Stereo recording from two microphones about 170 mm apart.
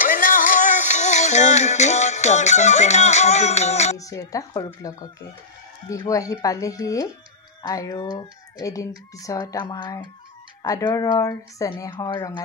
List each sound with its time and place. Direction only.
0.1 s music: 50° left (ahead or behind)
4.0 s speech: 20° left (ahead or behind)